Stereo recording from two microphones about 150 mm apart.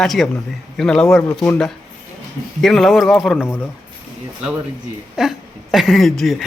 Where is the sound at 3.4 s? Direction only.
15° left (ahead or behind).